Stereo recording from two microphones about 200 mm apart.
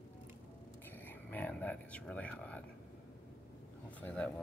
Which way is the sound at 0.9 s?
10° left (ahead or behind).